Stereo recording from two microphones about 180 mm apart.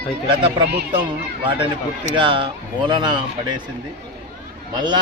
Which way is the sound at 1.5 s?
30° right (ahead or behind).